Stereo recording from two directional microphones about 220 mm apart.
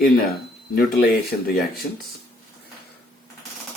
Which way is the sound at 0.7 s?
45° left (ahead or behind).